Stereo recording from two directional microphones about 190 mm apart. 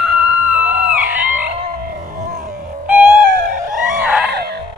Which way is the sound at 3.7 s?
45° right (ahead or behind).